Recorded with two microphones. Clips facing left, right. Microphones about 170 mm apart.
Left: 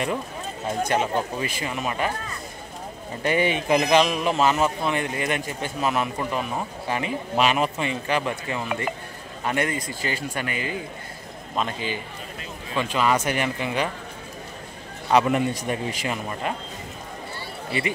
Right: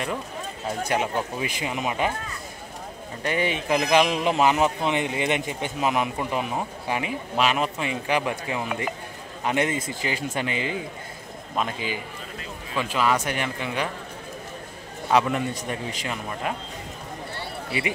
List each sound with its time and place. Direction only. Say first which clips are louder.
0.8 s a man's voice: left 1 dB; 10° right (ahead or behind)
3.3 s speech: left 3 dB; centre (ahead or behind)
4.0 s a man's voice: even; 20° right (ahead or behind); by 7.9 s centre (ahead or behind)
7.9 s a man's voice: even; 10° right (ahead or behind)
11.5 s a man's voice: even; 10° right (ahead or behind)
15.2 s speech: left 4 dB; 10° left (ahead or behind)